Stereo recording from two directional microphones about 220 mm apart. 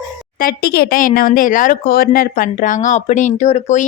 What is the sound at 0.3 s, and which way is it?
Speech, 45° left (ahead or behind).